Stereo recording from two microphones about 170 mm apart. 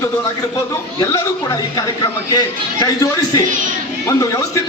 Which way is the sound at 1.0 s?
20° left (ahead or behind).